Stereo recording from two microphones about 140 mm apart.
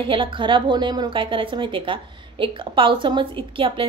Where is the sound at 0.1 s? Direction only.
35° right (ahead or behind).